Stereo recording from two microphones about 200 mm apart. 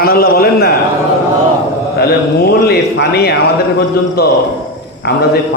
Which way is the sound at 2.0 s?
50° left (ahead or behind).